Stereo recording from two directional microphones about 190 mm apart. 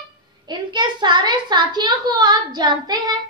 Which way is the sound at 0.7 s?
25° right (ahead or behind).